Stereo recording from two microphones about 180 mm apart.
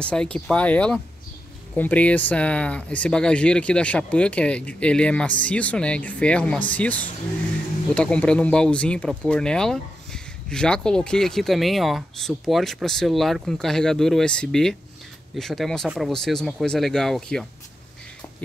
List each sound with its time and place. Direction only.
0.0 s speech: 5° left (ahead or behind)